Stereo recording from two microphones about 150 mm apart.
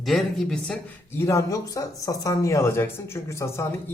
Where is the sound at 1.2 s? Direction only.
20° left (ahead or behind).